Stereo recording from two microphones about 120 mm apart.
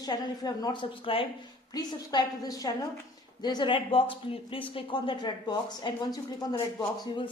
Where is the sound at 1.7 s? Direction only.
35° left (ahead or behind).